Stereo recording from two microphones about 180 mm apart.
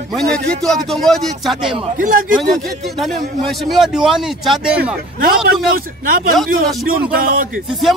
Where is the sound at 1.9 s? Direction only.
50° right (ahead or behind).